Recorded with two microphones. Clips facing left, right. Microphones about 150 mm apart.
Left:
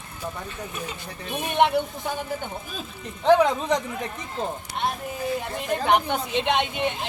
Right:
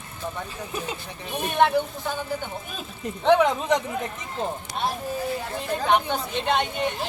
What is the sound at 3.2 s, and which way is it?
Speech, centre (ahead or behind).